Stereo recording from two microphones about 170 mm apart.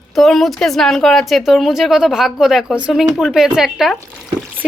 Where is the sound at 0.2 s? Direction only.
Centre (ahead or behind).